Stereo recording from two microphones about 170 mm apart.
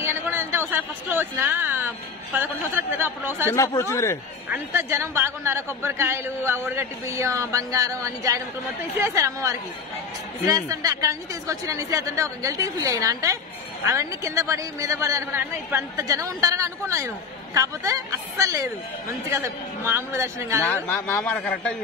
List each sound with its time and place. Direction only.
0.0 s a sound: 15° right (ahead or behind)
2.3 s a man's voice: 15° right (ahead or behind)
3.4 s speech: 15° left (ahead or behind)
4.5 s a man's voice: 15° right (ahead or behind)
20.6 s speech: 10° left (ahead or behind)